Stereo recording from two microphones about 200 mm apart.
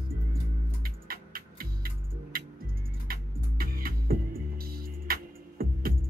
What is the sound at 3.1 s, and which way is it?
Music, 45° right (ahead or behind).